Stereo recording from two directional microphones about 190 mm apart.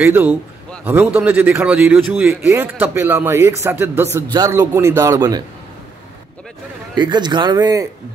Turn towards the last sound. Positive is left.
turn(degrees=-20)  # may be behind; listen again after turning